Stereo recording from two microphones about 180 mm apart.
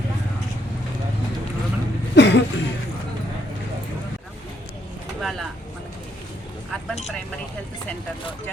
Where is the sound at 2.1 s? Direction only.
75° left (ahead or behind).